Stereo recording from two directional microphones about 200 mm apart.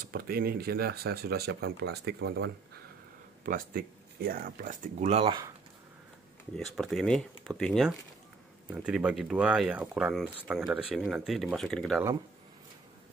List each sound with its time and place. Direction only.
0.0 s speech: 45° right (ahead or behind)
3.4 s speech: 45° right (ahead or behind)
5.0 s speech: 30° right (ahead or behind)
6.5 s speech: centre (ahead or behind)